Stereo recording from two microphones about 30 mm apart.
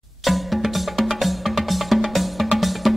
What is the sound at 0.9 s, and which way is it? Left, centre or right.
Music, centre.